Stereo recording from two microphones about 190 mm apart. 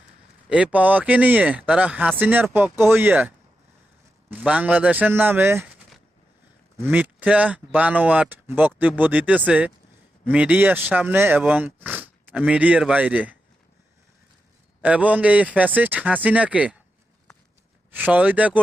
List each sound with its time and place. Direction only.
0.4 s speech: 5° right (ahead or behind)
6.8 s speech: 10° right (ahead or behind)
14.8 s speech: 5° right (ahead or behind)
17.9 s speech: 10° right (ahead or behind)